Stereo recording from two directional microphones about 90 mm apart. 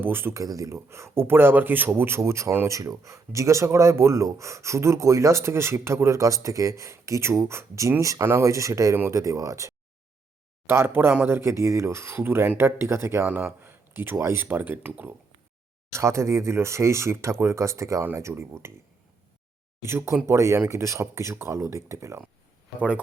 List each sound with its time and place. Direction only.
0.0 s speech: 25° right (ahead or behind)
0.4 s speech: 40° right (ahead or behind); by 15.1 s 20° right (ahead or behind)
15.9 s speech: 30° right (ahead or behind)
19.8 s speech: 30° right (ahead or behind)